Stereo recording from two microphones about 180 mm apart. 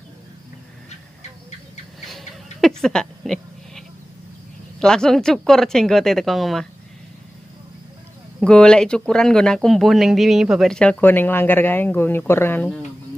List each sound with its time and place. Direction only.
2.0 s sheep: centre (ahead or behind)
4.7 s speech: 5° left (ahead or behind)
8.4 s speech: 5° left (ahead or behind)